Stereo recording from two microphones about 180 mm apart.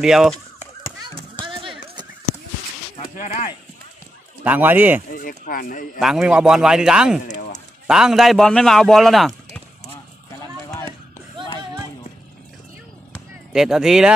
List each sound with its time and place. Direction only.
0.0 s a man's voice: centre (ahead or behind)
1.5 s horse: 30° right (ahead or behind)
3.2 s speech: 40° left (ahead or behind)
4.5 s speech: 10° right (ahead or behind)
5.1 s speech: 50° left (ahead or behind)
5.9 s a man's voice: centre (ahead or behind)
7.2 s a sound: 45° left (ahead or behind)
7.8 s a man's voice: 5° right (ahead or behind)
10.8 s a sound: 20° left (ahead or behind)
13.5 s a man's voice: 5° right (ahead or behind)